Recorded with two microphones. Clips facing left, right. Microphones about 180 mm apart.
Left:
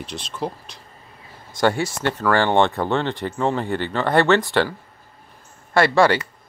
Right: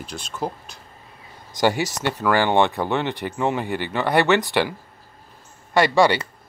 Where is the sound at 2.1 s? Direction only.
10° right (ahead or behind).